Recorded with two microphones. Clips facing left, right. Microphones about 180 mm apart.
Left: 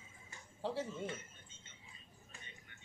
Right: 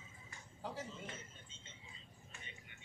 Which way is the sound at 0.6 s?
30° left (ahead or behind).